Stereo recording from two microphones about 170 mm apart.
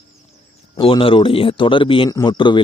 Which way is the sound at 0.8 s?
30° left (ahead or behind).